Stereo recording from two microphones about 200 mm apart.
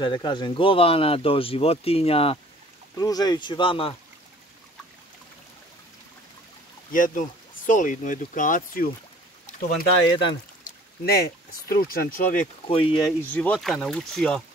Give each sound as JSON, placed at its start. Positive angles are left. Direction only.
{"t": 0.0, "sound": "speech", "side_deg": 20}
{"t": 6.9, "sound": "speech", "side_deg": 40}
{"t": 12.6, "sound": "speech", "side_deg": 25}
{"t": 13.3, "sound": "speech", "side_deg": 5}